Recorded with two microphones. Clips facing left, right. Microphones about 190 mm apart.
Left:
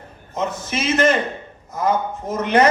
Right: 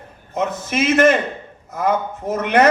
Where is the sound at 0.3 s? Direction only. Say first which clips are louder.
Right 3 dB; 55° right (ahead or behind).